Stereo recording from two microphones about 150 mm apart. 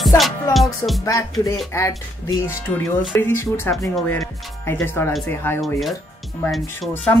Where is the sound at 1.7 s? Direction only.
20° left (ahead or behind).